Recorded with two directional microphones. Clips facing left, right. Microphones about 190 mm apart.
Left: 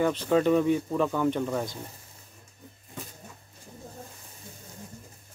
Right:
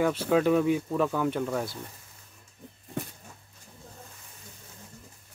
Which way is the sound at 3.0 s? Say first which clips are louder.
Right 7 dB; 65° right (ahead or behind).